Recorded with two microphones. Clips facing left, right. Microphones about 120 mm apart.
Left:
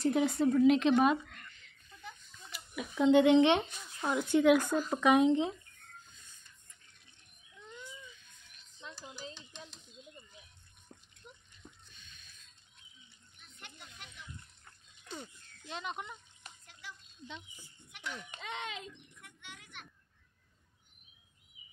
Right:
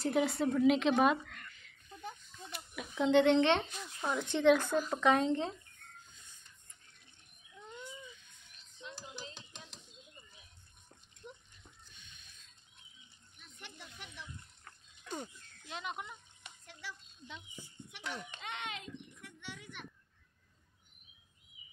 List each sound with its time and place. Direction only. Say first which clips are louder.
0.0 s a woman's voice: left 3 dB; centre (ahead or behind)
2.7 s speech: left 3 dB; centre (ahead or behind)
15.7 s a sound: left 1 dB; 5° right (ahead or behind)
18.0 s a child's voice: right 1 dB; 35° right (ahead or behind)